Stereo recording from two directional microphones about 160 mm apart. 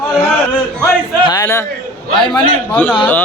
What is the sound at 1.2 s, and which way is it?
Speech, 20° left (ahead or behind).